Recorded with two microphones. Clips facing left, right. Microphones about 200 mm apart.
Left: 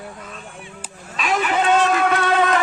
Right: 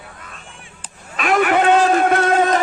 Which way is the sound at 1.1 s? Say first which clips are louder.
Right 5 dB; 55° right (ahead or behind).